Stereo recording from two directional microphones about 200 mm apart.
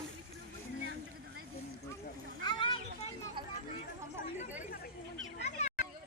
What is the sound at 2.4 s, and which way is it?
Children playing, 25° left (ahead or behind).